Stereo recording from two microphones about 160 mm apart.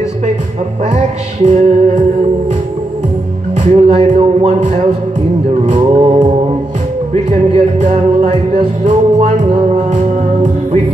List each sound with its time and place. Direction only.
1.4 s music: 45° right (ahead or behind)
3.5 s music: 45° right (ahead or behind)
5.7 s music: 35° right (ahead or behind)
7.2 s music: 45° right (ahead or behind)